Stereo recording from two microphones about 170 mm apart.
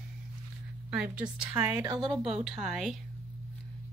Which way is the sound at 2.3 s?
5° right (ahead or behind).